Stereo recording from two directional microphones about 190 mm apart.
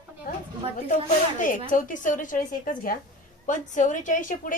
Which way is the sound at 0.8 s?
40° left (ahead or behind).